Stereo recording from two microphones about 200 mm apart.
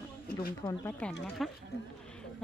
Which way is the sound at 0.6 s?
10° left (ahead or behind).